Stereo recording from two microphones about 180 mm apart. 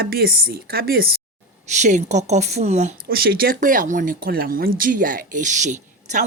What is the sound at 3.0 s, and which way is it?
Speech, 55° right (ahead or behind).